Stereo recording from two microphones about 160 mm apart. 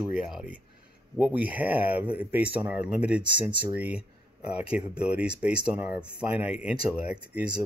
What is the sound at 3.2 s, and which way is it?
Speech, 30° right (ahead or behind).